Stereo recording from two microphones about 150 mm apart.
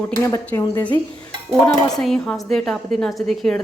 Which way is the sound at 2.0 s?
5° left (ahead or behind).